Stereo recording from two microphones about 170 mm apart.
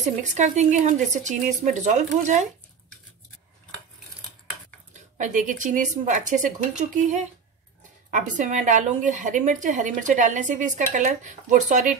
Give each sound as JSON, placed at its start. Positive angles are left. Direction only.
{"t": 0.2, "sound": "a woman's voice", "side_deg": -45}
{"t": 4.9, "sound": "a woman's voice", "side_deg": -45}